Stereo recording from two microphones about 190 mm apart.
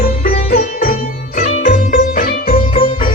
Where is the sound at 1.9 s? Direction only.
50° left (ahead or behind).